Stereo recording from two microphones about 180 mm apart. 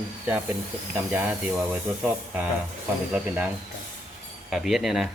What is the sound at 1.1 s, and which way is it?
Speech, 10° right (ahead or behind).